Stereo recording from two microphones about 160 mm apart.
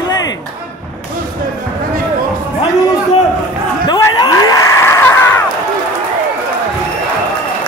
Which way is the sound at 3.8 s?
25° left (ahead or behind).